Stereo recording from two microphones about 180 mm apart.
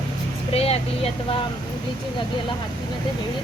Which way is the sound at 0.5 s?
35° left (ahead or behind).